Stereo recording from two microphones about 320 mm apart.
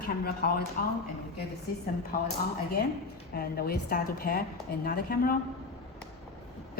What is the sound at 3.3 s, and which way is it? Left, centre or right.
Speech, left.